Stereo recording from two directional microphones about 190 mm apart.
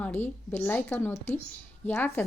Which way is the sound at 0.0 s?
10° left (ahead or behind).